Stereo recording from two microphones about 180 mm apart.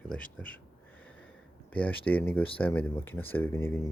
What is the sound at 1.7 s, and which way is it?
Speech, 10° left (ahead or behind).